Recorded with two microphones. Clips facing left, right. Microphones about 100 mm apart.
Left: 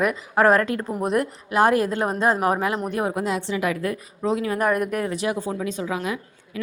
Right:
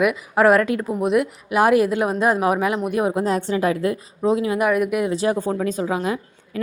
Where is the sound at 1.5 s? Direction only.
15° right (ahead or behind).